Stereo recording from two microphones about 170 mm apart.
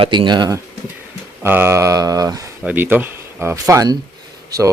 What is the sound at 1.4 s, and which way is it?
Speech, 15° right (ahead or behind).